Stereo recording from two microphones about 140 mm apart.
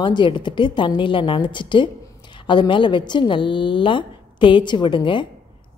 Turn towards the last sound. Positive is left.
turn(degrees=35)  # may be behind; listen again after turning